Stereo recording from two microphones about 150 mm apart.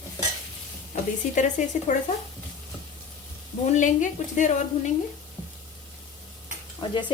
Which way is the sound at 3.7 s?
55° left (ahead or behind).